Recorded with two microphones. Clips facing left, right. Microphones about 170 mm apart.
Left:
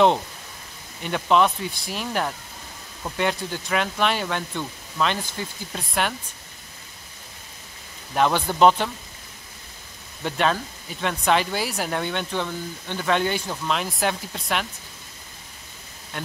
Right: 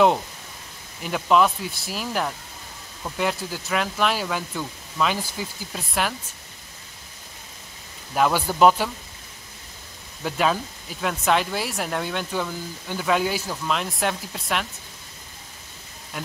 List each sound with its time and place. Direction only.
1.0 s speech: 5° right (ahead or behind)
8.1 s speech: 5° right (ahead or behind)
10.2 s speech: 5° right (ahead or behind)